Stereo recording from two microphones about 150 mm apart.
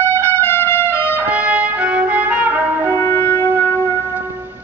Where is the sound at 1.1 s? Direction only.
10° right (ahead or behind).